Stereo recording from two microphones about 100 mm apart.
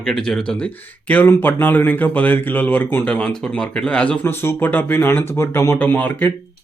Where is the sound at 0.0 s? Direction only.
5° left (ahead or behind).